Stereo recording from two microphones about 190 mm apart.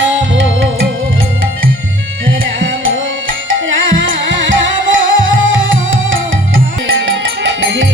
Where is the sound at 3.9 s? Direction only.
80° right.